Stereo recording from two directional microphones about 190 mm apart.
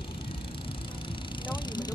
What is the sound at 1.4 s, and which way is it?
Vehicle, 25° left (ahead or behind).